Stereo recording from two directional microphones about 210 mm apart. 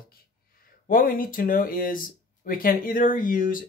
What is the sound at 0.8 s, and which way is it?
Speech, 40° left (ahead or behind).